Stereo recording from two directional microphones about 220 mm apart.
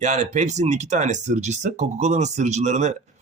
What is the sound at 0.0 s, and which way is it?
Speech, 30° right (ahead or behind).